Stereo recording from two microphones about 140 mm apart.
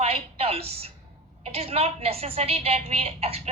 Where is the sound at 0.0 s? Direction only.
45° right (ahead or behind).